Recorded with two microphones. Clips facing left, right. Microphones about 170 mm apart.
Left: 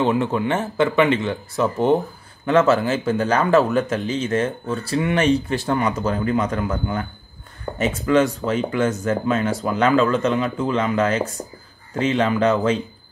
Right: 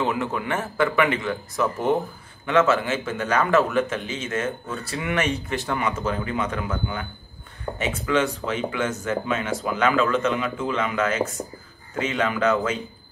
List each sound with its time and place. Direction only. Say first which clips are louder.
0.0 s speech: left 6 dB; 30° left (ahead or behind)